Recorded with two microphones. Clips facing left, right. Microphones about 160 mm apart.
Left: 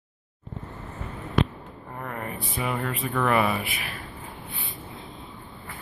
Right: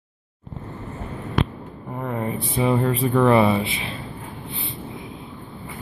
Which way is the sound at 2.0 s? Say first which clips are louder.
Right 8 dB; 20° right (ahead or behind).